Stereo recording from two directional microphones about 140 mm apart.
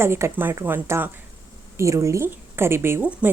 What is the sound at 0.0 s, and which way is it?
A woman's voice, 15° right (ahead or behind).